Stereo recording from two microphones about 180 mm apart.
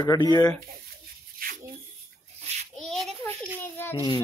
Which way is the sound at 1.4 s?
55° right (ahead or behind).